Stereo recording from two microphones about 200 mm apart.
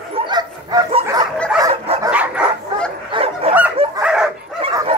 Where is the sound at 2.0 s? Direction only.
5° right (ahead or behind).